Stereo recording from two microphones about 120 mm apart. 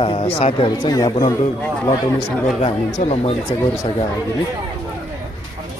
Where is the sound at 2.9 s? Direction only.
70° left (ahead or behind).